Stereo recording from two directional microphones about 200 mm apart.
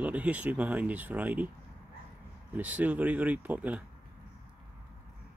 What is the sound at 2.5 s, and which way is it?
Speech, 10° right (ahead or behind).